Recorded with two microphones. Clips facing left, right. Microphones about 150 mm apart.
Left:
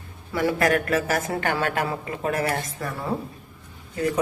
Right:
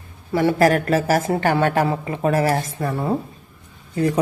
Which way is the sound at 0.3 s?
30° right (ahead or behind).